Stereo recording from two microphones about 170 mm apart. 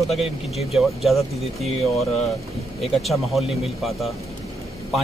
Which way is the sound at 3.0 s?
Centre (ahead or behind).